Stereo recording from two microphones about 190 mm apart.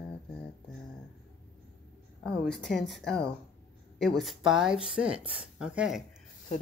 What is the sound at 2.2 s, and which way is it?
Speech, 5° left (ahead or behind).